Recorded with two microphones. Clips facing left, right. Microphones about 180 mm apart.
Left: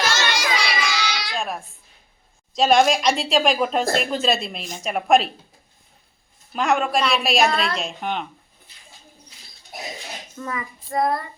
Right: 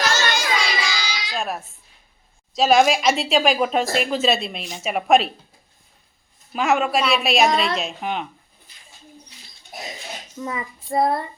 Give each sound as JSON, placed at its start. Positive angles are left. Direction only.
{"t": 0.1, "sound": "children playing", "side_deg": 70}
{"t": 1.3, "sound": "a sound", "side_deg": -5}
{"t": 2.6, "sound": "speech", "side_deg": -5}
{"t": 6.5, "sound": "speech", "side_deg": -5}
{"t": 10.3, "sound": "child singing", "side_deg": -20}